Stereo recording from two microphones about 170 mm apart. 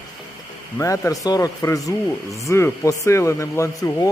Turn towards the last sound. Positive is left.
turn(degrees=15)  # may be behind; listen again after turning